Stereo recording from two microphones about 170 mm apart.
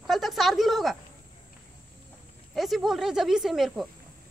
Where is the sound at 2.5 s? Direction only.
Centre (ahead or behind).